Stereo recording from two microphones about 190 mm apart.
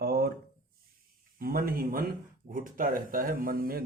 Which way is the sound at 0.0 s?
55° right (ahead or behind).